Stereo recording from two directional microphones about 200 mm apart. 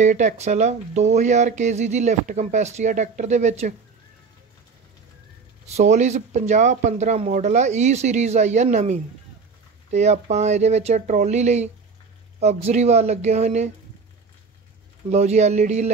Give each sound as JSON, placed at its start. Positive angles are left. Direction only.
{"t": 0.0, "sound": "speech", "side_deg": -35}
{"t": 5.7, "sound": "speech", "side_deg": -35}
{"t": 15.0, "sound": "speech", "side_deg": -35}